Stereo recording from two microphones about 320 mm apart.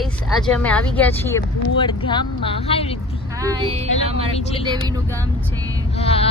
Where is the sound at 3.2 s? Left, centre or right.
Centre.